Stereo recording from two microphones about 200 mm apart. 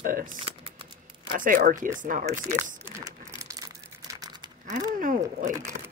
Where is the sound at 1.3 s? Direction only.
40° right (ahead or behind).